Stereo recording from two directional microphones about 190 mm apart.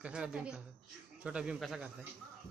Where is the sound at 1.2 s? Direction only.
5° right (ahead or behind).